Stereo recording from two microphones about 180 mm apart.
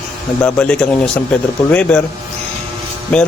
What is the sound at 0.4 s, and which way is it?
A man's voice, 5° left (ahead or behind).